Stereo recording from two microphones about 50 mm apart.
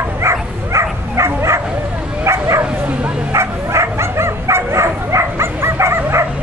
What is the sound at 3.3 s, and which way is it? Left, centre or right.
Bow-wow, right.